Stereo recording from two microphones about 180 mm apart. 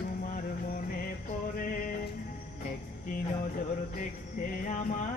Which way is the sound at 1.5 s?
55° left (ahead or behind).